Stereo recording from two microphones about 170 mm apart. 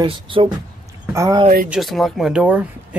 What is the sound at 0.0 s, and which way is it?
Speech, 30° right (ahead or behind).